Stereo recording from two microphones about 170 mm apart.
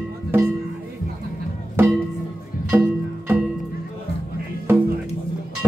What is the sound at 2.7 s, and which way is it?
Music, 10° right (ahead or behind).